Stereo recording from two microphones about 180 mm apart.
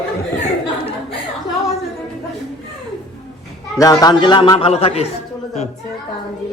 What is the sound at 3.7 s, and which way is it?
Speech, 20° left (ahead or behind).